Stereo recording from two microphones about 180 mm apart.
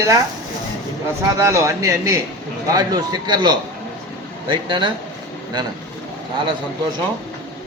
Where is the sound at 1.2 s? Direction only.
15° right (ahead or behind).